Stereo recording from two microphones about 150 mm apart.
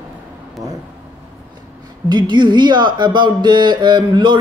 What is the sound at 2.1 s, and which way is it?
Speech, 30° right (ahead or behind).